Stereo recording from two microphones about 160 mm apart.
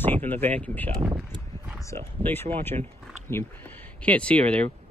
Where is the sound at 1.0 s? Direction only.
20° right (ahead or behind).